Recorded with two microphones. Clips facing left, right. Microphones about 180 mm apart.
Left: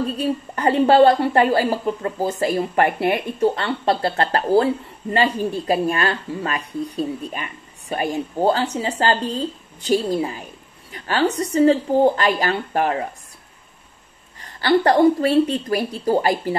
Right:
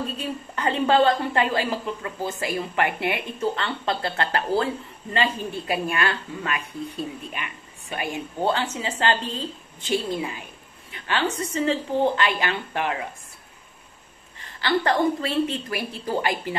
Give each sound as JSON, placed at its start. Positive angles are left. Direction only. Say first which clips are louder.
{"t": 0.2, "sound": "a woman's voice", "louder": "left 7 dB", "side_deg": 35}
{"t": 14.4, "sound": "a woman's voice", "louder": "left 6 dB", "side_deg": 40}